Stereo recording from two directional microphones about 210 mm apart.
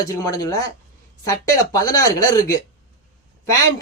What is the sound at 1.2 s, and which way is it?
Speech, 15° left (ahead or behind).